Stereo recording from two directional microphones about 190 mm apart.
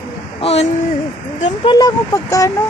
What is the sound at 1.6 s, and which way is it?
Speech, 20° left (ahead or behind).